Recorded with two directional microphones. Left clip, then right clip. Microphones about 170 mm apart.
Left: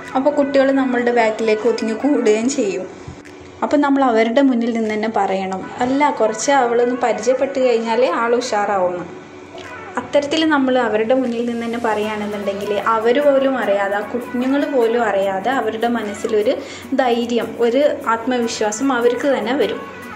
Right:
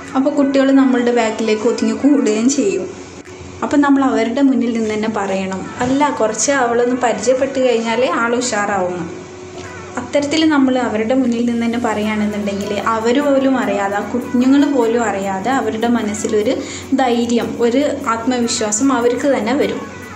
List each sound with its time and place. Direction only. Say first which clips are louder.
0.1 s speech: even; 15° left (ahead or behind)
10.1 s speech: right 1 dB; 15° left (ahead or behind)